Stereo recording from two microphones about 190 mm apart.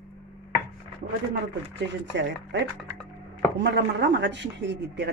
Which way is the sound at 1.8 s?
65° right (ahead or behind).